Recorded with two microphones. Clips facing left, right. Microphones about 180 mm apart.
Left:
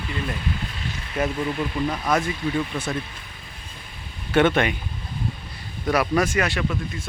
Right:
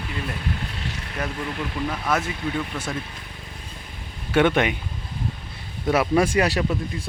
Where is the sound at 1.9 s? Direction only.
5° right (ahead or behind).